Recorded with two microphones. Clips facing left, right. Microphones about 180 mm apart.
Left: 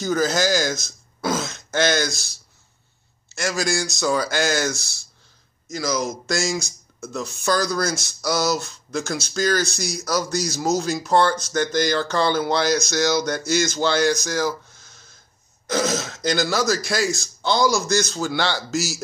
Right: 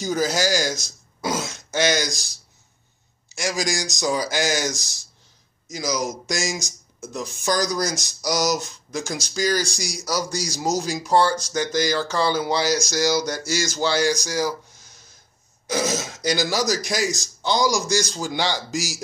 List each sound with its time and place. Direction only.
0.0 s speech: 15° right (ahead or behind)
13.2 s a sound: 60° left (ahead or behind)
13.7 s speech: 10° right (ahead or behind)